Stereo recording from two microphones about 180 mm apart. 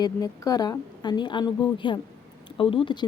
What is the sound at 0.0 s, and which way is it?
Speech, 20° left (ahead or behind).